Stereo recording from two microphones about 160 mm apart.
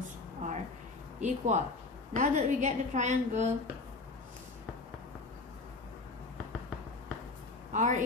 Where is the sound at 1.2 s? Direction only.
50° right (ahead or behind).